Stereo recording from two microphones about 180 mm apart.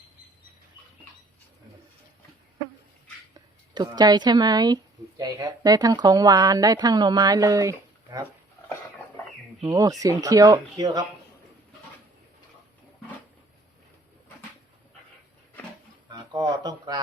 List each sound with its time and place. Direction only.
3.8 s a woman's voice: 20° right (ahead or behind)
9.6 s a woman's voice: 20° right (ahead or behind)
16.0 s a sound: 25° right (ahead or behind)